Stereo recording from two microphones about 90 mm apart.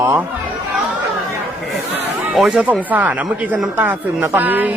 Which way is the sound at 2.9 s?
15° right (ahead or behind).